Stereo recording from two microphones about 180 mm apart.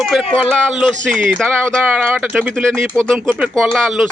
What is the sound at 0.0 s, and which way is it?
Speech, centre (ahead or behind).